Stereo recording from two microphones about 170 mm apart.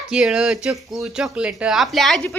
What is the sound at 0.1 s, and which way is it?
Speech, 5° right (ahead or behind).